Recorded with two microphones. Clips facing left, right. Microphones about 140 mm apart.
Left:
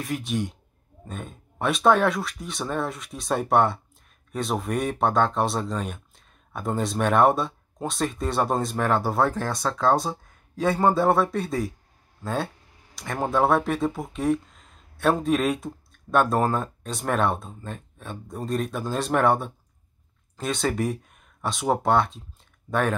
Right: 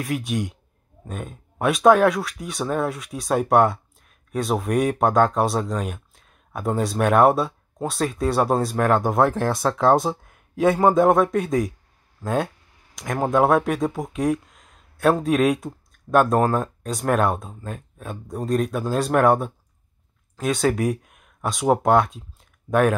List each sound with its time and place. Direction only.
0.0 s speech: 10° right (ahead or behind)
9.4 s speech: 25° right (ahead or behind)